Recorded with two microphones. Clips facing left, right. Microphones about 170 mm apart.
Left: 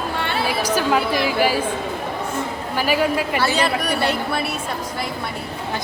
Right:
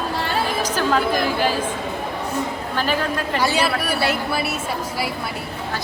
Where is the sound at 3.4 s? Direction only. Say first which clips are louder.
Right 2 dB; 10° right (ahead or behind).